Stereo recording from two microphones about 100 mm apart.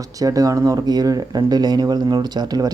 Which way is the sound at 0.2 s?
35° right (ahead or behind).